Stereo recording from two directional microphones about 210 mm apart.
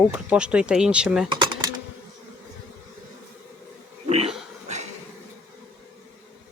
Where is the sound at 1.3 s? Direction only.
20° right (ahead or behind).